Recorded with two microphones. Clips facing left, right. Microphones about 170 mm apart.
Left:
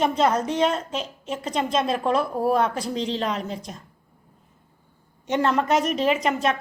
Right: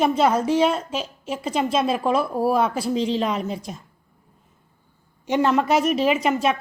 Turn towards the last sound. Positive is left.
turn(degrees=-5)  # may be behind; listen again after turning